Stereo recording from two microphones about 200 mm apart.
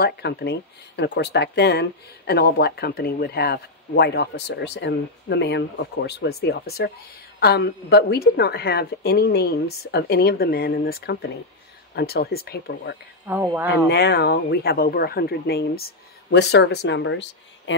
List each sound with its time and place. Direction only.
0.0 s a woman's voice: 55° left (ahead or behind)